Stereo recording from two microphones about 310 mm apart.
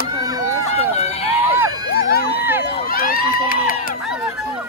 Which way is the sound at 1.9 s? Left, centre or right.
Left.